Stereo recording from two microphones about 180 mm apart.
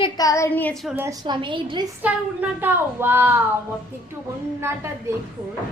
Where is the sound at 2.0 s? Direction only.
10° right (ahead or behind).